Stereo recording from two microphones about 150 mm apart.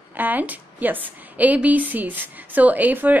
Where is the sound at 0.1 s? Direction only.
10° right (ahead or behind).